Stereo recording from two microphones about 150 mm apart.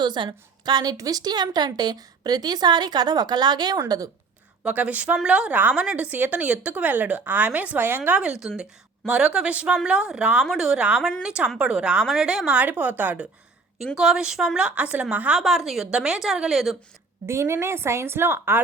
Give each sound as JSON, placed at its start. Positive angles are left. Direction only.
{"t": 0.0, "sound": "a woman's voice", "side_deg": -30}
{"t": 4.6, "sound": "a woman's voice", "side_deg": -10}
{"t": 17.2, "sound": "speech", "side_deg": -20}